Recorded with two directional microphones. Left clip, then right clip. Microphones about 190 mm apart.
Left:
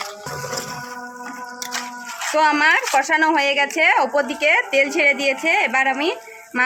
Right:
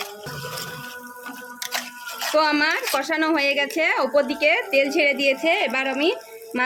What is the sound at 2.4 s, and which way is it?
Speech, 20° left (ahead or behind).